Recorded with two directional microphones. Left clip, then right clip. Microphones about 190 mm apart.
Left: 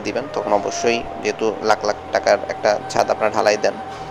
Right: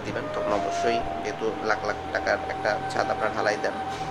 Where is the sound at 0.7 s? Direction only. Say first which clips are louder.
Left 5 dB; 30° left (ahead or behind).